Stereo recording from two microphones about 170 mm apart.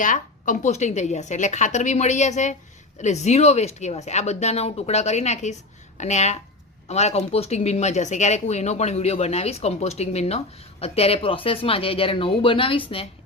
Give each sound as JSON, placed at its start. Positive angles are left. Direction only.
{"t": 0.0, "sound": "a woman's voice", "side_deg": 50}